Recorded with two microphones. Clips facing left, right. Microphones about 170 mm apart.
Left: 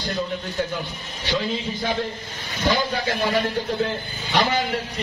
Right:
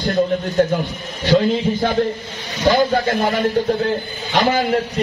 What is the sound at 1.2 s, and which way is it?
Speech, 50° right (ahead or behind).